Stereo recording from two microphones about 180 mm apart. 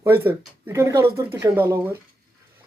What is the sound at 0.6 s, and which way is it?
Speech, 15° right (ahead or behind).